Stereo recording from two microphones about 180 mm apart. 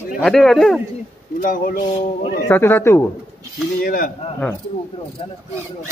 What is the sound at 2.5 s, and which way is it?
Speech, 10° left (ahead or behind).